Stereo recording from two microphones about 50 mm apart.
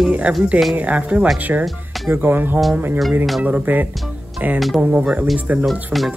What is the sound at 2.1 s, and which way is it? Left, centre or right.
Music, right.